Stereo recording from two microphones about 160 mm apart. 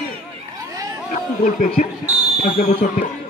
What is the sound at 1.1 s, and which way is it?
A man's voice, 50° left (ahead or behind).